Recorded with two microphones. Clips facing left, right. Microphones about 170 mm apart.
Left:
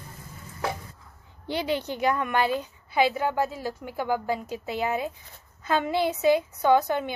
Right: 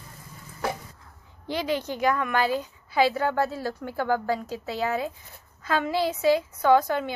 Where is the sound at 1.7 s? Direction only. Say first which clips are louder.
Right 1 dB; 20° left (ahead or behind).